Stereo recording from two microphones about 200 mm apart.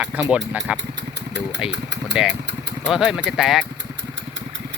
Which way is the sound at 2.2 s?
5° right (ahead or behind).